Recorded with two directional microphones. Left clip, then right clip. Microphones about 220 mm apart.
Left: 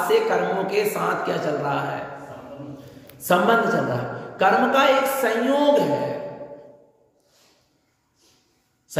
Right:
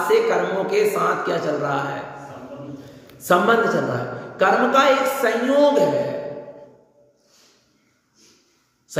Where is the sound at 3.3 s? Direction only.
5° left (ahead or behind).